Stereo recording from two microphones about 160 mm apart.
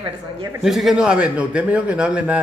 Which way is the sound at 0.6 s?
Centre (ahead or behind).